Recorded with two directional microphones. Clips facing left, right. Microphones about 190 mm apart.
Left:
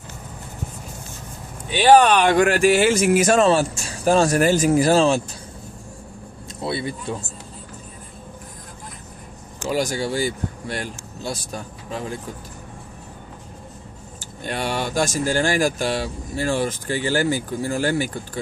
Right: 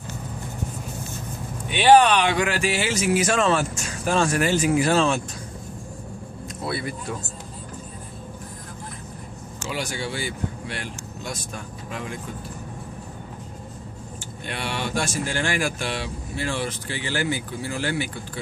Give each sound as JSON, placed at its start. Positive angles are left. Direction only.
{"t": 1.7, "sound": "speech", "side_deg": 40}
{"t": 6.6, "sound": "speech", "side_deg": 25}
{"t": 9.7, "sound": "speech", "side_deg": 40}
{"t": 14.4, "sound": "speech", "side_deg": 40}